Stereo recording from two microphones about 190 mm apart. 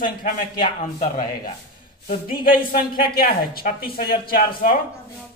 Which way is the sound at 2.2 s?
25° left (ahead or behind).